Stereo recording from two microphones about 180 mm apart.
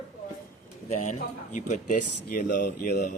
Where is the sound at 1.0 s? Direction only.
45° left (ahead or behind).